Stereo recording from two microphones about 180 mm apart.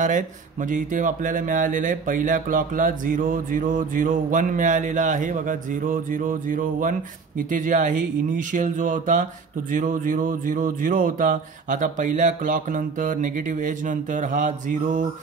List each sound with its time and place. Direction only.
0.7 s speech: 45° right (ahead or behind)